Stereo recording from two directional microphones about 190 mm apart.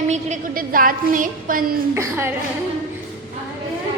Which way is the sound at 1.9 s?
10° right (ahead or behind).